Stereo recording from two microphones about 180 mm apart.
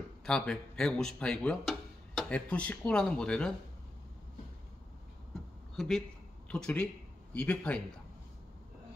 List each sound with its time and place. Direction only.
0.2 s speech: 5° left (ahead or behind)
5.8 s a man's voice: centre (ahead or behind)